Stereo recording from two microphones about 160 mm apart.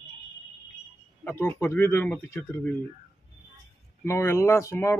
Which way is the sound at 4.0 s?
15° left (ahead or behind).